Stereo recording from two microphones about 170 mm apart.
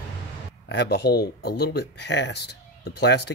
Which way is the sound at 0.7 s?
80° left.